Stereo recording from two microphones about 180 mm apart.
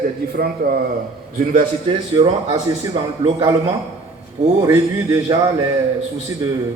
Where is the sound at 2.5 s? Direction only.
25° right (ahead or behind).